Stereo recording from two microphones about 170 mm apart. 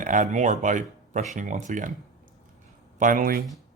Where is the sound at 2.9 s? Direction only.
50° right (ahead or behind).